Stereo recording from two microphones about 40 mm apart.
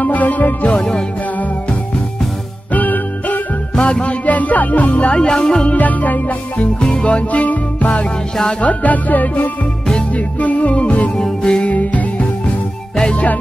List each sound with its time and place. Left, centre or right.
0.0 s music: left
0.7 s music: centre
2.7 s music: left
3.8 s music: left
5.1 s music: left
5.7 s music: left
6.8 s music: left
11.1 s music: left
11.6 s music: left